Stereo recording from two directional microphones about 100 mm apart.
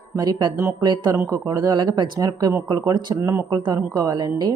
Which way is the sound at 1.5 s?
45° right (ahead or behind).